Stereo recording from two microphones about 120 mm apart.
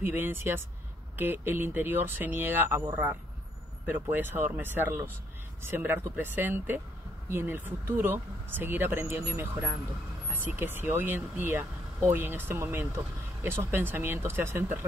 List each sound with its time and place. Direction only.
0.0 s speech: 20° right (ahead or behind)